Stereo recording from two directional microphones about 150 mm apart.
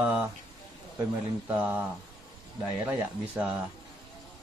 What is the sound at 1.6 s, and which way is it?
Speech, 10° right (ahead or behind).